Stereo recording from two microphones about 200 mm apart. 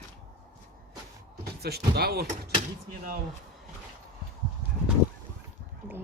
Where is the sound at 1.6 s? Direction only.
50° right (ahead or behind).